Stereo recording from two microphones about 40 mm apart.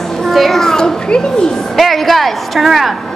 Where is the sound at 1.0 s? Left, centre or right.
Left.